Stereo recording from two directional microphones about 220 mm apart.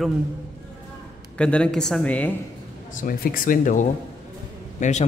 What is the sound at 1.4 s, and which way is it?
Speech, 5° left (ahead or behind).